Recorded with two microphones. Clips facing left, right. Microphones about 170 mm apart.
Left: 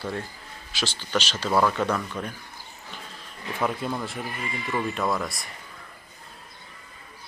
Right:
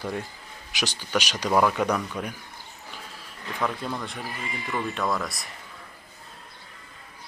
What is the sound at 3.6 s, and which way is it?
Speech, 5° left (ahead or behind).